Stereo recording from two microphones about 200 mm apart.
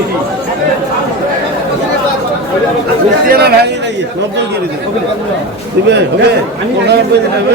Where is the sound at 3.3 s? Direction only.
50° right (ahead or behind).